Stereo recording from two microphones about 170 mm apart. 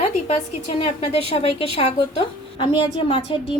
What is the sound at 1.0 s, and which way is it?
A woman's voice, 35° left (ahead or behind).